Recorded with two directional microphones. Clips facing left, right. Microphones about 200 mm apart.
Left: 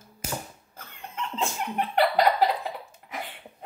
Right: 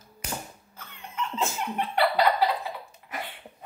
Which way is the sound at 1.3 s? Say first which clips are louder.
Even; centre (ahead or behind).